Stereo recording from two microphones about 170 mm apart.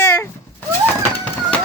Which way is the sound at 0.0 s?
15° left (ahead or behind).